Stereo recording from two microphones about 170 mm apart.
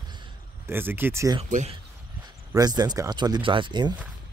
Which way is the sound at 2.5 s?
25° right (ahead or behind).